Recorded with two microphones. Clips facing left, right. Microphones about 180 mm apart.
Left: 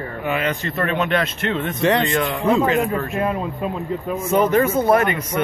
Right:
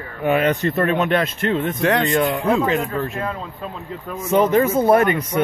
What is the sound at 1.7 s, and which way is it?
Speech, centre (ahead or behind).